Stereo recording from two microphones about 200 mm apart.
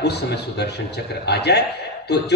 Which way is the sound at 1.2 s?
55° left (ahead or behind).